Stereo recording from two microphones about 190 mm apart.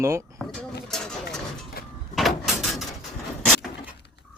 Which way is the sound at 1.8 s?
50° left (ahead or behind).